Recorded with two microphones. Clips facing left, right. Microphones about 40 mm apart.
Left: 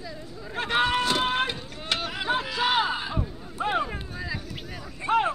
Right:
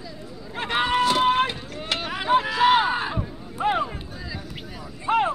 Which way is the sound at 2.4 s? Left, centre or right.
Right.